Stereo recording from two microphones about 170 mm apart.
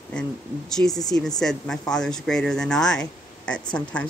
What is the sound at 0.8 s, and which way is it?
Speech, 10° left (ahead or behind).